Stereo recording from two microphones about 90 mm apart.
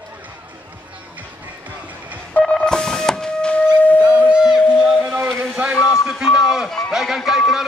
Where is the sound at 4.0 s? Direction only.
10° right (ahead or behind).